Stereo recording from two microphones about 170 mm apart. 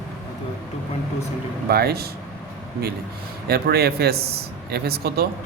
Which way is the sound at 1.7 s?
65° right (ahead or behind).